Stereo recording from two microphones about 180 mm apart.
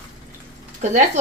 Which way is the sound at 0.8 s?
40° right (ahead or behind).